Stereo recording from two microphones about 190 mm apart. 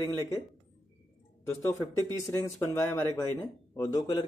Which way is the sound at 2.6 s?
15° left (ahead or behind).